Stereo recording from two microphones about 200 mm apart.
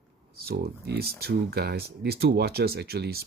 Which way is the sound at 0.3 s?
50° right (ahead or behind).